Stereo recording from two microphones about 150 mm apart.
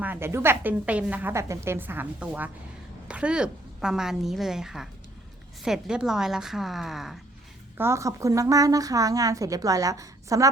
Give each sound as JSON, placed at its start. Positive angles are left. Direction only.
{"t": 0.0, "sound": "a woman's voice", "side_deg": -15}
{"t": 7.8, "sound": "a woman's voice", "side_deg": -20}